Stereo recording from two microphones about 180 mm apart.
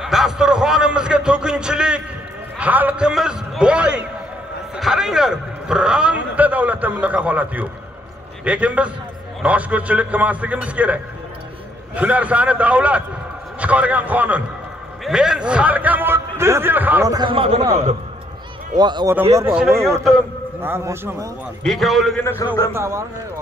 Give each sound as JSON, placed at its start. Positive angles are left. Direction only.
{"t": 0.0, "sound": "a man's voice", "side_deg": 0}
{"t": 18.8, "sound": "speech", "side_deg": -25}
{"t": 19.3, "sound": "a man's voice", "side_deg": -10}
{"t": 20.6, "sound": "a man's voice", "side_deg": -15}
{"t": 21.6, "sound": "a man's voice", "side_deg": 0}
{"t": 22.2, "sound": "a man's voice", "side_deg": 15}
{"t": 22.8, "sound": "a man's voice", "side_deg": -15}